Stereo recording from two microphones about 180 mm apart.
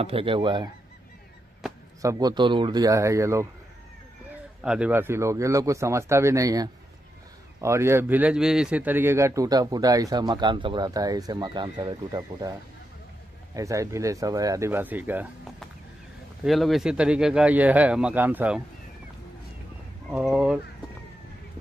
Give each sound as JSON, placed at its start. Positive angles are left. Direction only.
{"t": 0.0, "sound": "a man's voice", "side_deg": -30}
{"t": 2.0, "sound": "a man's voice", "side_deg": -20}
{"t": 4.6, "sound": "a man's voice", "side_deg": -5}
{"t": 13.6, "sound": "speech", "side_deg": -15}
{"t": 20.1, "sound": "speech", "side_deg": -5}